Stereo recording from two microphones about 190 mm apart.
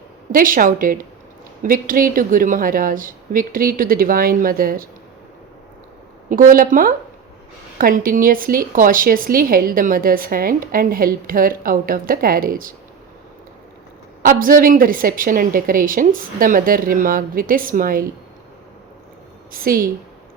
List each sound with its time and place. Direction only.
0.3 s speech: 45° right (ahead or behind)
6.2 s speech: 45° right (ahead or behind)
14.2 s speech: 45° right (ahead or behind)
19.5 s speech: 50° right (ahead or behind)